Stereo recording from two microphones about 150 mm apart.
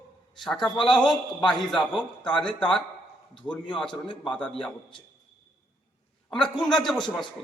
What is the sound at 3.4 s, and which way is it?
Speech, 30° left (ahead or behind).